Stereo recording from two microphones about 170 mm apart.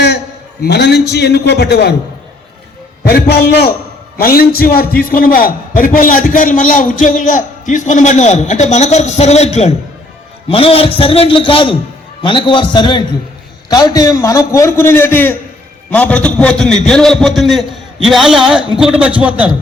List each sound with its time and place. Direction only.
0.6 s a man's voice: 75° left (ahead or behind)
3.0 s a man's voice: 65° left (ahead or behind)
4.2 s a man's voice: 65° left (ahead or behind); by 19.5 s 10° right (ahead or behind)